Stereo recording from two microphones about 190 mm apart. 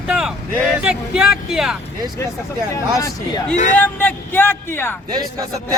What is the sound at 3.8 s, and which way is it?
Speech, 10° left (ahead or behind).